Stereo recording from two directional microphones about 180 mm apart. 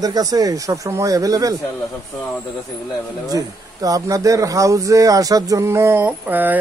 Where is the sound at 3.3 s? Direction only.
20° right (ahead or behind).